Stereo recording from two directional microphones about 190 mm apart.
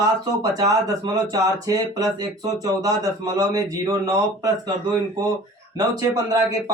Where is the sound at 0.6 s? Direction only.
20° right (ahead or behind).